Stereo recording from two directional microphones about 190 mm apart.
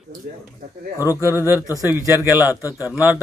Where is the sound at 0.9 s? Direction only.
15° left (ahead or behind).